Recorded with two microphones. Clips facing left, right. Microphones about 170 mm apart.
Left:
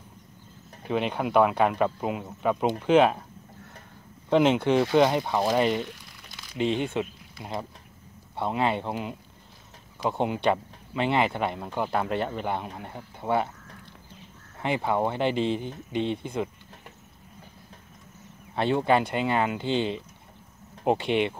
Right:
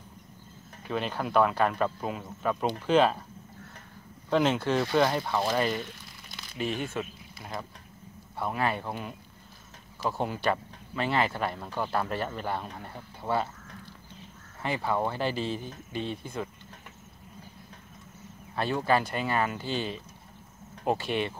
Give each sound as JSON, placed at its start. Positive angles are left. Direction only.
{"t": 0.8, "sound": "speech", "side_deg": 20}
{"t": 4.3, "sound": "speech", "side_deg": 15}
{"t": 8.4, "sound": "speech", "side_deg": 25}
{"t": 14.6, "sound": "speech", "side_deg": 20}
{"t": 18.5, "sound": "speech", "side_deg": 25}